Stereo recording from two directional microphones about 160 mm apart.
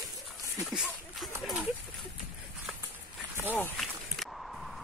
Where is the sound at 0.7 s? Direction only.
5° right (ahead or behind).